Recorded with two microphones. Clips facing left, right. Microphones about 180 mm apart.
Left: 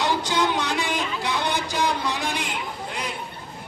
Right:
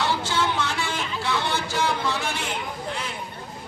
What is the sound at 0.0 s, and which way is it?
Music, 15° left (ahead or behind).